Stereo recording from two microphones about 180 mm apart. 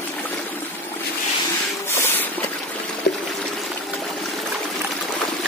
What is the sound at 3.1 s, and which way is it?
Pour, 90° left.